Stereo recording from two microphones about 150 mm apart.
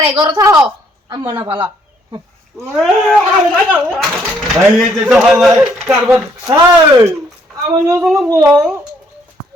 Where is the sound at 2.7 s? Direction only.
Centre (ahead or behind).